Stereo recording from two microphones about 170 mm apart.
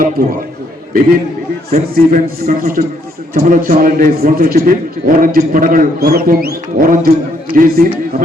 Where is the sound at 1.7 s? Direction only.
60° right (ahead or behind).